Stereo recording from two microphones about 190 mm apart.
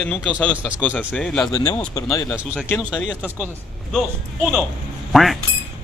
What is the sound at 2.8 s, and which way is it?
Speech, 5° right (ahead or behind).